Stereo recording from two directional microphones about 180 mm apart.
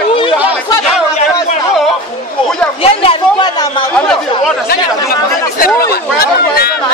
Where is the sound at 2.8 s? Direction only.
30° left (ahead or behind).